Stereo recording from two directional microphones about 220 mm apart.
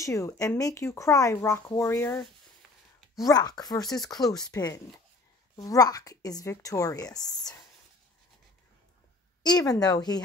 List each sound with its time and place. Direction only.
0.0 s speech: 15° left (ahead or behind)
9.4 s speech: 20° left (ahead or behind)